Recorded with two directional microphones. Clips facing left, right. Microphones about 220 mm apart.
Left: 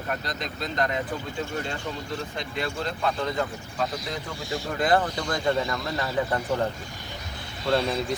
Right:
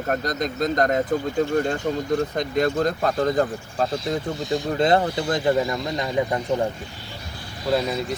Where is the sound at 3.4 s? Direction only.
35° right (ahead or behind).